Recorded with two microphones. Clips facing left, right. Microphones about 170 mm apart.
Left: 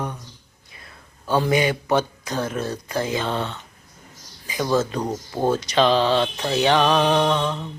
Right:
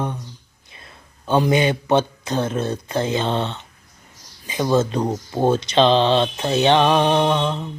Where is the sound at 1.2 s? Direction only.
20° right (ahead or behind).